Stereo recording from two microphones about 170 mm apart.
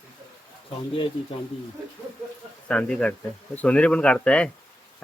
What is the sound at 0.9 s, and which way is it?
Speech, 30° left (ahead or behind).